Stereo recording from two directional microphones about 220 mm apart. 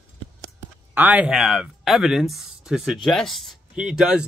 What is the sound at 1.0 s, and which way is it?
Speech, 5° right (ahead or behind).